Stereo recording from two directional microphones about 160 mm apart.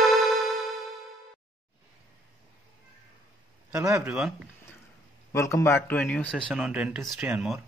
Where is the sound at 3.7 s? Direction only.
15° right (ahead or behind).